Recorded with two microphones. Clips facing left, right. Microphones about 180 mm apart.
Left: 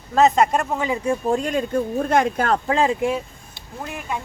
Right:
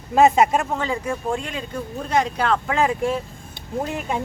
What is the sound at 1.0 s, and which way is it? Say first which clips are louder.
Speech: left 4 dB; 40° left (ahead or behind).